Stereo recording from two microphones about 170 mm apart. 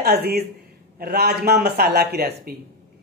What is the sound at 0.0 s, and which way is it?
Speech, 65° right (ahead or behind).